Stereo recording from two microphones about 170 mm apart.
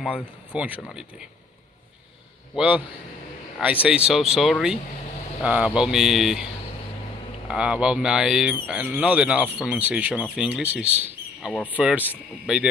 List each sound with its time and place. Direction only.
0.6 s speech: 10° right (ahead or behind)
2.5 s speech: 10° right (ahead or behind)
7.4 s speech: 5° right (ahead or behind)